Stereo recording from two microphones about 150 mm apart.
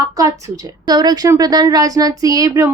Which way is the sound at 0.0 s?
20° right (ahead or behind).